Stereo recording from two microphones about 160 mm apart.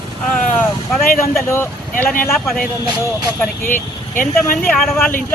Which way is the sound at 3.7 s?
55° left (ahead or behind).